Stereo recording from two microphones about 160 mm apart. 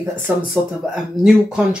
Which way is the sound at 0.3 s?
10° right (ahead or behind).